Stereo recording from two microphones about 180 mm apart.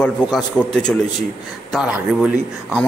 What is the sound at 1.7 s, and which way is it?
A man's voice, 5° right (ahead or behind).